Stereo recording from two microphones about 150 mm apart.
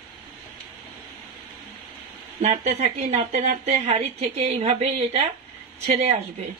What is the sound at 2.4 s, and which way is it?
A woman's voice, 45° right (ahead or behind).